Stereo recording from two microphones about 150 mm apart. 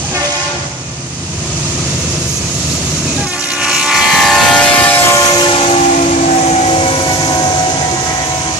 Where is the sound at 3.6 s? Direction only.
5° right (ahead or behind).